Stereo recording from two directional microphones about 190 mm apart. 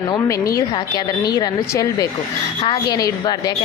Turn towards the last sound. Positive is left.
turn(degrees=20)  # may be behind; listen again after turning